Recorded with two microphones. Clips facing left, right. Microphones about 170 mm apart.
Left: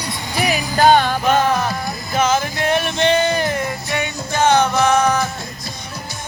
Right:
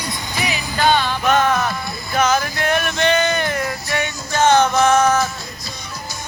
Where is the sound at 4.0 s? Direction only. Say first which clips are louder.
Even; 10° left (ahead or behind).